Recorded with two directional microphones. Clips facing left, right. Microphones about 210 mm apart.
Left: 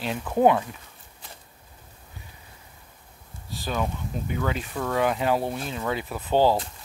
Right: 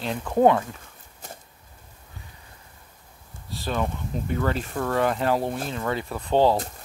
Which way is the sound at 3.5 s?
Centre (ahead or behind).